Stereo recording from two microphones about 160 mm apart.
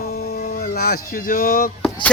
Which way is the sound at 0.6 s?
70° left (ahead or behind).